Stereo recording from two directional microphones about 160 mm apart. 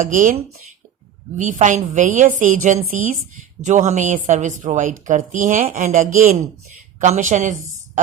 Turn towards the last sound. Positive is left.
turn(degrees=-50)  # may be behind; listen again after turning